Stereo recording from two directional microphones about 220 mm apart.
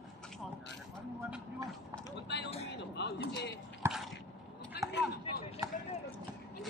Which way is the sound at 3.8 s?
15° right (ahead or behind).